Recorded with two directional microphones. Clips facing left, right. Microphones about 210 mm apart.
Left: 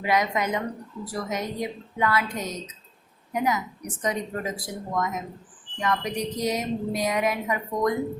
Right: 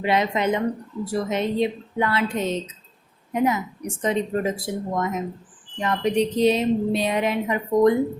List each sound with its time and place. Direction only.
0.0 s a woman's voice: 25° right (ahead or behind)